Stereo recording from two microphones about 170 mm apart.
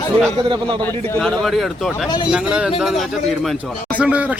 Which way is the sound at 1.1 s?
5° left (ahead or behind).